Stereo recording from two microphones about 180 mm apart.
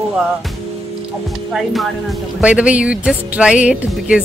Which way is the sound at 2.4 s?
5° right (ahead or behind).